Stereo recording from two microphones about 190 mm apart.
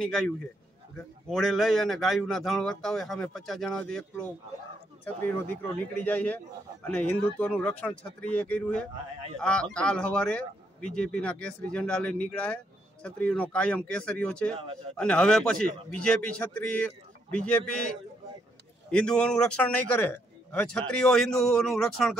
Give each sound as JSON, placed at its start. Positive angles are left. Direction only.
{"t": 0.9, "sound": "a man's voice", "side_deg": 0}
{"t": 14.6, "sound": "a man's voice", "side_deg": -30}
{"t": 15.0, "sound": "a man's voice", "side_deg": 5}
{"t": 18.9, "sound": "a man's voice", "side_deg": 5}